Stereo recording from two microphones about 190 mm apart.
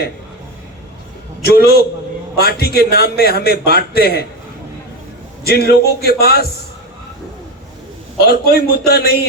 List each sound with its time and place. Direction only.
1.4 s a man's voice: 55° left (ahead or behind)
5.5 s a man's voice: 55° left (ahead or behind)
8.2 s a man's voice: 55° left (ahead or behind)